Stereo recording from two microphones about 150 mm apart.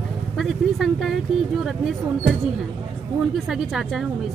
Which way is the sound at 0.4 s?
Centre (ahead or behind).